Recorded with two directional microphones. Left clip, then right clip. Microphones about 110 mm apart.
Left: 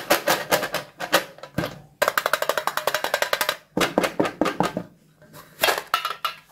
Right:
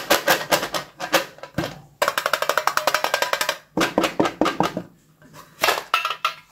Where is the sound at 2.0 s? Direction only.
45° left (ahead or behind).